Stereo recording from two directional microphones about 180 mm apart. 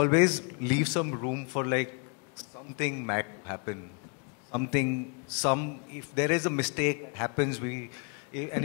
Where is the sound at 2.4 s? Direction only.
5° right (ahead or behind).